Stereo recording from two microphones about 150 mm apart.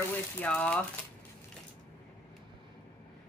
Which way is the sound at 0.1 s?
10° left (ahead or behind).